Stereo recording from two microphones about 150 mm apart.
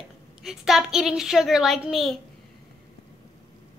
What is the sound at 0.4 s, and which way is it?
A woman's voice, centre (ahead or behind).